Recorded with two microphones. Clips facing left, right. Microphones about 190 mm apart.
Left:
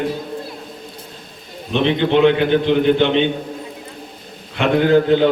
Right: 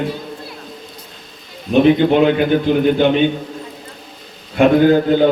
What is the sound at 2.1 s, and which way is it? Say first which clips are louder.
Speech: even; 40° right (ahead or behind).